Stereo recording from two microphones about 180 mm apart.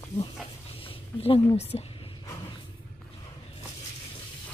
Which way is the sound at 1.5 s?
35° left (ahead or behind).